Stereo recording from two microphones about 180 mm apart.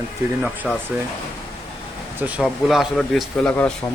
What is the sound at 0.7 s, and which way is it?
Speech, centre (ahead or behind).